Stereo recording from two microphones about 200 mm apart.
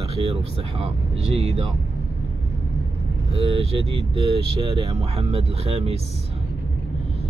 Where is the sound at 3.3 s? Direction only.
30° right (ahead or behind).